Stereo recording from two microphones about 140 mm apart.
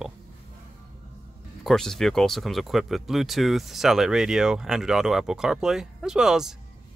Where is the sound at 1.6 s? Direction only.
Centre (ahead or behind).